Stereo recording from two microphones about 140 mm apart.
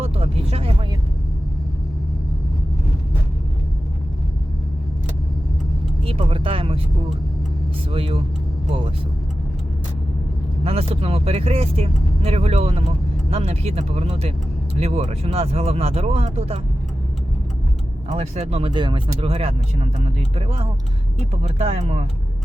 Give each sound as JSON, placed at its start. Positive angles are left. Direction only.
{"t": 0.0, "sound": "vehicle", "side_deg": -45}
{"t": 6.1, "sound": "speech", "side_deg": -40}
{"t": 7.9, "sound": "speech", "side_deg": -40}
{"t": 10.6, "sound": "speech", "side_deg": -45}
{"t": 18.1, "sound": "speech", "side_deg": -50}
{"t": 18.7, "sound": "speech", "side_deg": -35}